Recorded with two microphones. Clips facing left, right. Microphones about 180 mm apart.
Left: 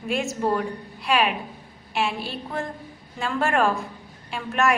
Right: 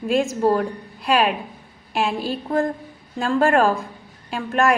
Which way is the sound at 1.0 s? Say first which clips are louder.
Right 3 dB; 40° right (ahead or behind).